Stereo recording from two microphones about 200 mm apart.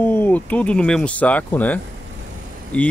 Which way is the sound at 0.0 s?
10° left (ahead or behind).